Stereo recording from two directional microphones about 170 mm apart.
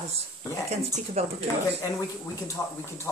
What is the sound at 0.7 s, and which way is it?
Speech, 40° right (ahead or behind).